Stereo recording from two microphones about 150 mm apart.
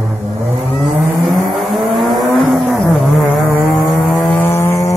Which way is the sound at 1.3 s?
Centre (ahead or behind).